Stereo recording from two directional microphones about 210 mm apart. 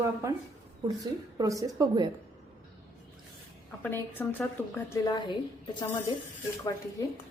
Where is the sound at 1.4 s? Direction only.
15° right (ahead or behind).